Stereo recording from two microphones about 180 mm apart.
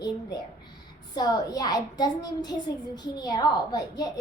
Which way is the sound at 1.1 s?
20° left (ahead or behind).